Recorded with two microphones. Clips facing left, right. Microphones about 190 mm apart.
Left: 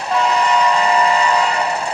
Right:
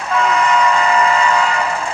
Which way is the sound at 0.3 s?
35° left (ahead or behind).